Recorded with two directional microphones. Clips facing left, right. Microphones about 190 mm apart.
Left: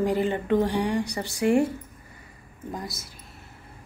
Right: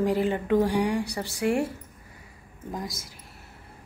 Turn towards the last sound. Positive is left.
turn(degrees=-15)  # may be behind; listen again after turning